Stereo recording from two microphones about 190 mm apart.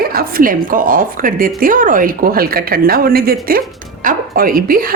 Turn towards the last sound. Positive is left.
turn(degrees=-50)  # may be behind; listen again after turning